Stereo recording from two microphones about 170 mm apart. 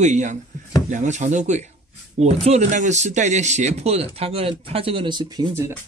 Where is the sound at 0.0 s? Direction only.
45° right (ahead or behind); by 5.8 s 15° right (ahead or behind).